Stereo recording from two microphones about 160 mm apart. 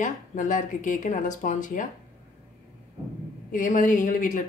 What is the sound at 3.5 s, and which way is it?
Speech, 55° left (ahead or behind).